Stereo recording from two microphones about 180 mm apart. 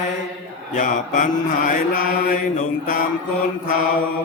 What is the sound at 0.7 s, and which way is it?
Mantra, 45° left (ahead or behind).